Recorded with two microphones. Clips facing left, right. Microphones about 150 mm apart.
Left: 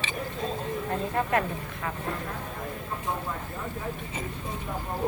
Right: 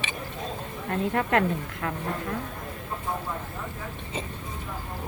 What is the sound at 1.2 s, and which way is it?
Speech, 70° right (ahead or behind).